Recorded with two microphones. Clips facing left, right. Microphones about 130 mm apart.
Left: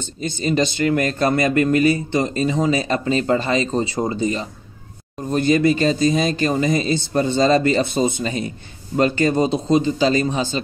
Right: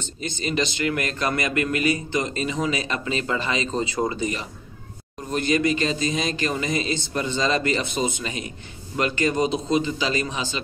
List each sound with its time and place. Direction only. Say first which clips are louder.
0.4 s speech: left 6 dB; 35° left (ahead or behind)
3.9 s speech: left 4 dB; 30° left (ahead or behind)